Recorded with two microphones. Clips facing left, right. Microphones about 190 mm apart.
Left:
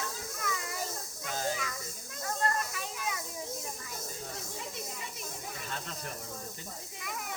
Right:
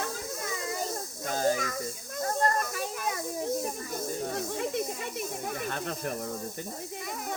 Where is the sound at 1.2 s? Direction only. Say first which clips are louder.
Right 7 dB; 45° right (ahead or behind).